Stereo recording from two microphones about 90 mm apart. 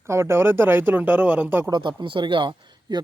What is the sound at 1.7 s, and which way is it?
Speech, 60° right (ahead or behind).